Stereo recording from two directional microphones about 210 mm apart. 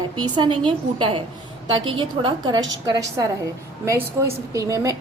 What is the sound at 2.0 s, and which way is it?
Speech, 20° right (ahead or behind).